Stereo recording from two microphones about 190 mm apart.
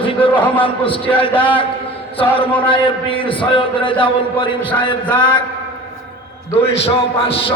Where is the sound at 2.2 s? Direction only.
10° left (ahead or behind).